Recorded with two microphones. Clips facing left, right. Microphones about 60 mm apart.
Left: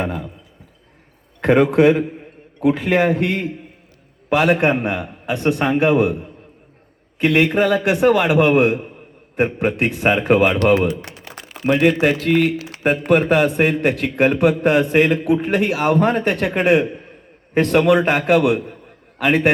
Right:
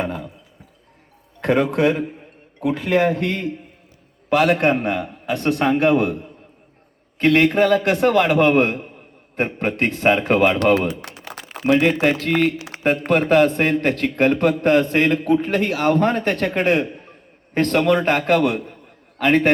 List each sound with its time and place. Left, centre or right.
0.0 s a man's voice: centre
1.4 s a man's voice: left
11.6 s a man's voice: centre